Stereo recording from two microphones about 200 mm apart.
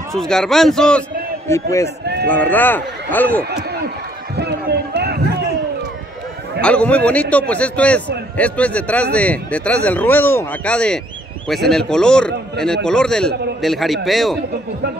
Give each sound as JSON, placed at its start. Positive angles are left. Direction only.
{"t": 0.1, "sound": "a man's voice", "side_deg": 0}
{"t": 4.4, "sound": "run", "side_deg": -55}
{"t": 6.6, "sound": "a man's voice", "side_deg": 5}